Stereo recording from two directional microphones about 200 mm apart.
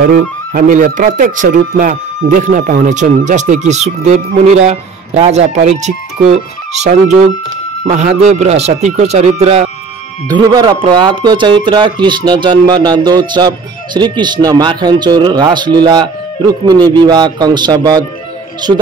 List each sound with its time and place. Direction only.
0.0 s speech: 45° right (ahead or behind)
10.2 s speech: 20° right (ahead or behind)